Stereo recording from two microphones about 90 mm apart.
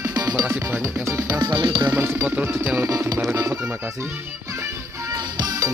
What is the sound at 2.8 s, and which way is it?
Speech, 35° right (ahead or behind).